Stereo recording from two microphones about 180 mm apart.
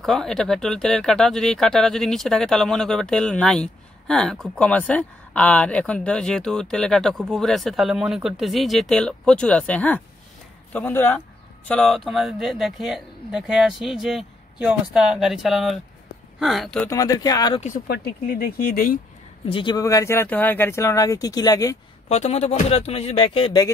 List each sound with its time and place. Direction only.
0.0 s speech: centre (ahead or behind)
16.8 s speech: 20° left (ahead or behind)
17.6 s speech: 45° left (ahead or behind)
17.8 s speech: 55° left (ahead or behind)
19.5 s speech: 25° left (ahead or behind)
22.1 s speech: 40° left (ahead or behind)